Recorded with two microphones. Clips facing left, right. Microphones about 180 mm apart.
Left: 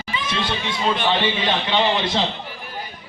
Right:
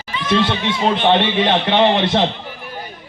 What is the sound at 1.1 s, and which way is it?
A man's voice, 60° right (ahead or behind).